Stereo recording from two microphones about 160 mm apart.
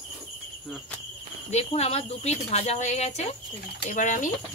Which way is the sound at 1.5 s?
40° left (ahead or behind).